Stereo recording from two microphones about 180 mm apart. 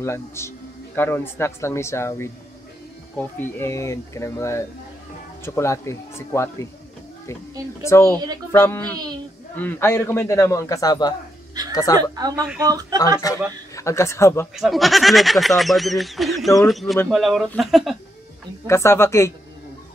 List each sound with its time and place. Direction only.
0.0 s a man's voice: 15° left (ahead or behind)
7.8 s a man's voice: 15° left (ahead or behind)
8.9 s speech: 20° right (ahead or behind)
9.6 s a man's voice: 10° left (ahead or behind)
12.0 s speech: 20° right (ahead or behind)
13.2 s a man's voice: 20° left (ahead or behind)
14.5 s speech: centre (ahead or behind)
18.7 s a man's voice: 15° left (ahead or behind)